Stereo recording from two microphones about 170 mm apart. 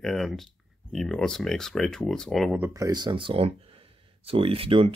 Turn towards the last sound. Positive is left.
turn(degrees=-35)  # may be behind; listen again after turning